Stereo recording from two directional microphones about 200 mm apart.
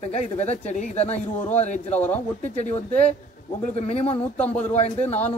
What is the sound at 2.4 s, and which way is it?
Speech, 35° left (ahead or behind).